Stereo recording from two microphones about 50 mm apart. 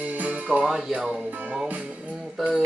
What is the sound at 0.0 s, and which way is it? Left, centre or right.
Music, right.